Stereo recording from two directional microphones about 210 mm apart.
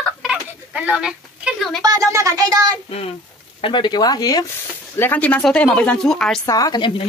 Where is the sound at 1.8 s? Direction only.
15° right (ahead or behind).